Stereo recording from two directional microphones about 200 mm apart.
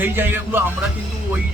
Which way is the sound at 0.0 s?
10° right (ahead or behind).